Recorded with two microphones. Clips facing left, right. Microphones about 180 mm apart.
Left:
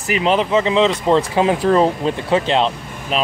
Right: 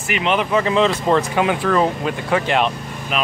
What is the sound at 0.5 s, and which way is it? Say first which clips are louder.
Speech: left 2 dB; 20° left (ahead or behind).